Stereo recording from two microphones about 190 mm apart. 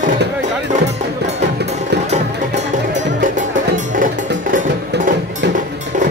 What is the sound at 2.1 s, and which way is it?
Music, 40° right (ahead or behind).